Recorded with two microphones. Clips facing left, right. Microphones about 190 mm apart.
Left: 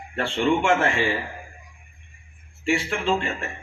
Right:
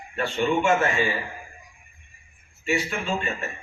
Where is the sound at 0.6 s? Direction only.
75° left (ahead or behind).